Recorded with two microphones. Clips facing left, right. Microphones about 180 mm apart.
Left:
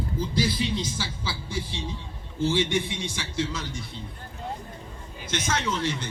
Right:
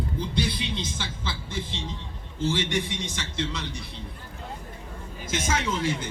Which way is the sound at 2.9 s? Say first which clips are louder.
Left 2 dB; 10° left (ahead or behind).